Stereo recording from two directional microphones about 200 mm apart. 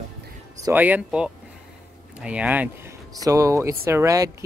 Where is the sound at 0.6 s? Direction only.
10° right (ahead or behind).